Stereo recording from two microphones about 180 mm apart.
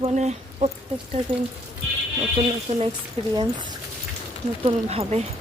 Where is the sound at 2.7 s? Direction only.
40° right (ahead or behind).